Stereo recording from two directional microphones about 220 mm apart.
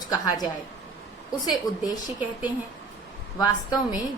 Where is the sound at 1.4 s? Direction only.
15° left (ahead or behind).